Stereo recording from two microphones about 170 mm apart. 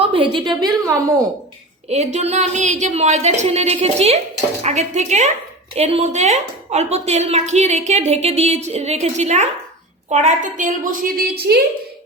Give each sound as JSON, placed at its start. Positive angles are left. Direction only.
{"t": 0.0, "sound": "a woman's voice", "side_deg": -35}
{"t": 1.9, "sound": "a woman's voice", "side_deg": -40}